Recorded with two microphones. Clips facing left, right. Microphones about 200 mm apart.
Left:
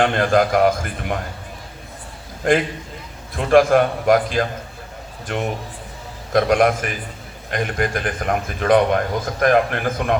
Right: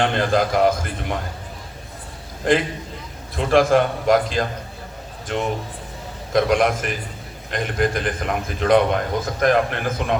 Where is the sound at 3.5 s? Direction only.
50° left (ahead or behind).